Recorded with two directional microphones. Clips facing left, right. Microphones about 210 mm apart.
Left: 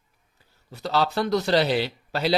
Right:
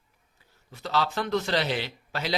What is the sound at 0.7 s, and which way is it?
Speech, 35° left (ahead or behind).